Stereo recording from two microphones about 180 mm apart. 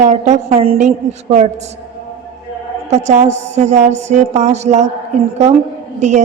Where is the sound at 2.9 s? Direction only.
40° right (ahead or behind).